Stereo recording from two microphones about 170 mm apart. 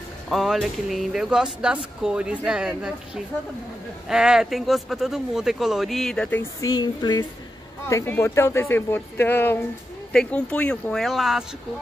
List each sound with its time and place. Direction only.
0.3 s speech: centre (ahead or behind)
4.1 s speech: 5° right (ahead or behind)
6.6 s a sound: 25° left (ahead or behind)
7.8 s speech: 15° left (ahead or behind); by 11.4 s centre (ahead or behind)